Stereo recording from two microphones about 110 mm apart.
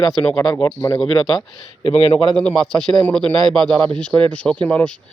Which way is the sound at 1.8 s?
65° left (ahead or behind).